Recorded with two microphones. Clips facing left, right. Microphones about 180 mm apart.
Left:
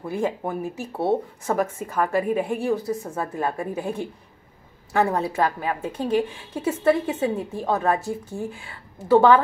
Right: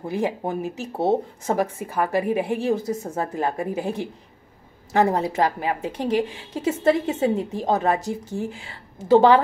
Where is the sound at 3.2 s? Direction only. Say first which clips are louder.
Right 2 dB; 20° right (ahead or behind).